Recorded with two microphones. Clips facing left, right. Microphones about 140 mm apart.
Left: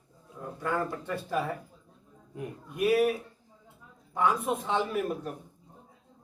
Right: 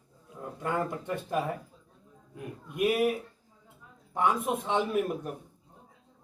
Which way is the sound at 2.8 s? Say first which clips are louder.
Left 2 dB; 20° right (ahead or behind).